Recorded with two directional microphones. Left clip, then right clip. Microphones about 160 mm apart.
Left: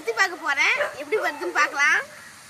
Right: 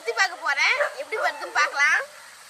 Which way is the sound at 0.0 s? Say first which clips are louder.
Left 1 dB; 5° right (ahead or behind).